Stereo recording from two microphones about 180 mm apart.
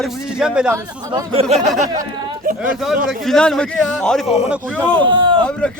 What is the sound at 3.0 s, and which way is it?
A man's voice, 5° left (ahead or behind).